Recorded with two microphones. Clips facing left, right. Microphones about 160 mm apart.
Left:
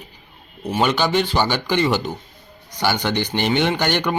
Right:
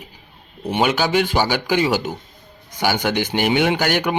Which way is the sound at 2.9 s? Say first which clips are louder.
Right 1 dB; 45° right (ahead or behind).